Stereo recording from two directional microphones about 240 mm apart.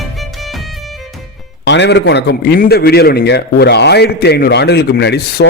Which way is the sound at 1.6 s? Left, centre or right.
Left.